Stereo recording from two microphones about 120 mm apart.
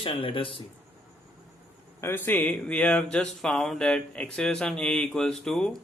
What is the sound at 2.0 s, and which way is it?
Speech, 15° left (ahead or behind).